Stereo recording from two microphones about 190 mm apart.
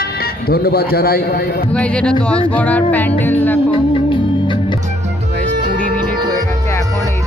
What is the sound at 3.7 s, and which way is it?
Music, 25° left (ahead or behind).